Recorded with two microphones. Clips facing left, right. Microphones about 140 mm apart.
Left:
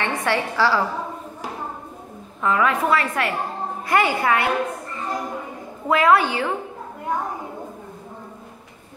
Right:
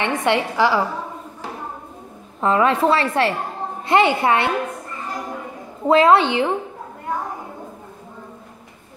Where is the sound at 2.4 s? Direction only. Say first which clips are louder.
Right 4 dB; 30° right (ahead or behind).